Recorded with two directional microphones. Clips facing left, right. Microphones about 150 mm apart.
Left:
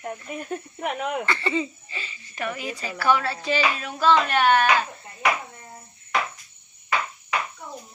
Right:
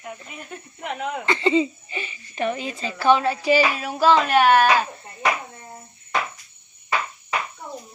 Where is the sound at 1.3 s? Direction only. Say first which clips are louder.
Right 6 dB; 20° right (ahead or behind).